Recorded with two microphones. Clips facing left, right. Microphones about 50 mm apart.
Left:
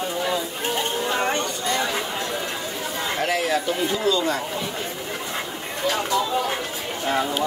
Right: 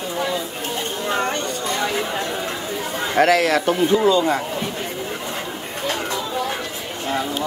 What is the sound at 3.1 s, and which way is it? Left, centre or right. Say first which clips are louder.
Speech: right 8 dB; right.